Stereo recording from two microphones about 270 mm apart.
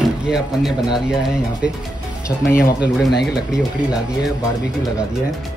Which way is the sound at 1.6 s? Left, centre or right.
Left.